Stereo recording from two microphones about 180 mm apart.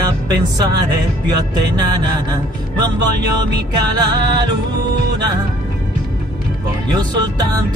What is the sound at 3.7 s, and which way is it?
Music, 25° right (ahead or behind).